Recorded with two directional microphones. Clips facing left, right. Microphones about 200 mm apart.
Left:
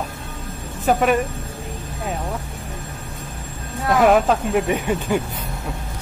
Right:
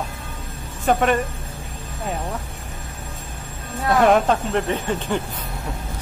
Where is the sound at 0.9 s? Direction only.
5° left (ahead or behind).